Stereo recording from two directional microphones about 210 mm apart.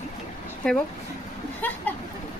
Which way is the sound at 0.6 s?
5° left (ahead or behind).